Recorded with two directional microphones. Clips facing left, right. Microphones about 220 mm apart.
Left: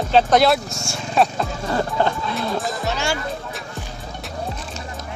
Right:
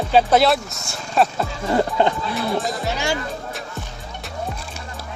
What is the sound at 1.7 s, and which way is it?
Speech, 20° right (ahead or behind).